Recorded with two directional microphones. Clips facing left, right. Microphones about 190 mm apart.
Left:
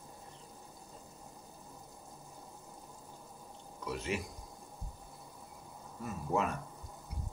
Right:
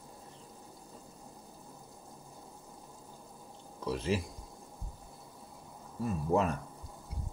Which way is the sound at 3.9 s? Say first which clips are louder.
Right 5 dB; 30° right (ahead or behind).